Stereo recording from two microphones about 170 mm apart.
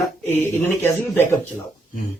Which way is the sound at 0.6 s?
10° left (ahead or behind).